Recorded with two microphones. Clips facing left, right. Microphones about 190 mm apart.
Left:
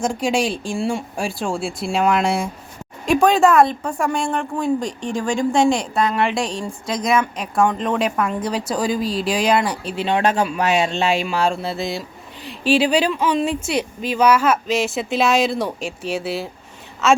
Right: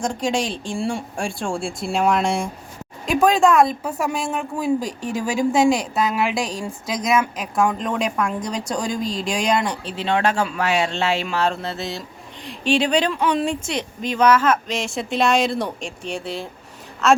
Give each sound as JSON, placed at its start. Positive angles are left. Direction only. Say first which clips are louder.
{"t": 0.0, "sound": "speech", "louder": "left 3 dB", "side_deg": 10}